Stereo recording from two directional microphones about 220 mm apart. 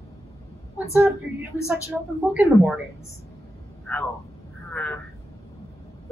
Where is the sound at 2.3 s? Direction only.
5° right (ahead or behind).